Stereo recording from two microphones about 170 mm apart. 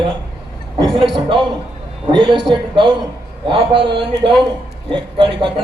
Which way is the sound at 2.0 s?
30° right (ahead or behind).